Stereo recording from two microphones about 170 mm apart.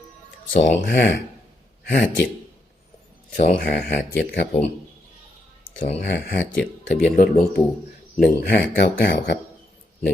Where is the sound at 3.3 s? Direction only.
60° left (ahead or behind).